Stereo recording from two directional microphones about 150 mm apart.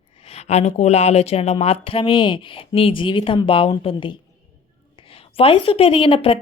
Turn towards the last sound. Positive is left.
turn(degrees=35)  # may be behind; listen again after turning